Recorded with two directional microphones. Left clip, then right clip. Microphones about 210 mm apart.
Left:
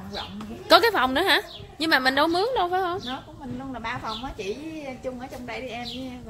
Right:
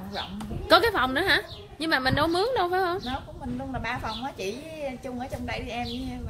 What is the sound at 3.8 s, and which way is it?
A woman's voice, 45° right (ahead or behind).